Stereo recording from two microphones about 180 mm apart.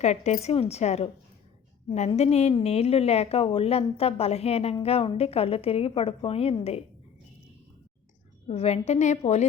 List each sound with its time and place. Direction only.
0.0 s a woman's voice: 40° left (ahead or behind)
8.4 s a woman's voice: 35° left (ahead or behind)